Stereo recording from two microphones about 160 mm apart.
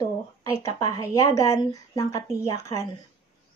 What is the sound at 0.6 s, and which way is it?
Speech, 20° left (ahead or behind).